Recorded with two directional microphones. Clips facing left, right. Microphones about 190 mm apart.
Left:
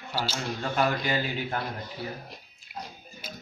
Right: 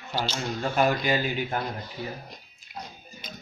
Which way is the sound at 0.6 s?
20° right (ahead or behind).